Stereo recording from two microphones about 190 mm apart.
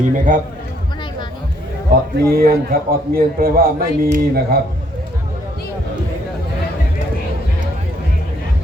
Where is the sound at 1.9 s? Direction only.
50° right (ahead or behind).